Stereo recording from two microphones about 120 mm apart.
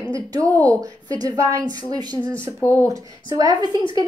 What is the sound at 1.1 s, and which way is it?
Speech, 30° right (ahead or behind).